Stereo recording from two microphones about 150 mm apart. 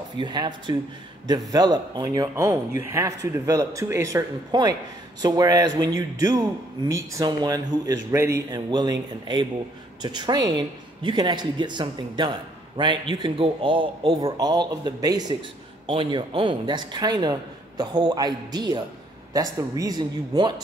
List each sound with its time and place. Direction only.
0.2 s a man's voice: 30° right (ahead or behind)